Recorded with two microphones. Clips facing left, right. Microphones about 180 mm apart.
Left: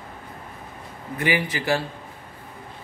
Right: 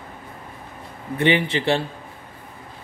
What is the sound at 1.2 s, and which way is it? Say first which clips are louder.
Speech: right 5 dB; 25° right (ahead or behind).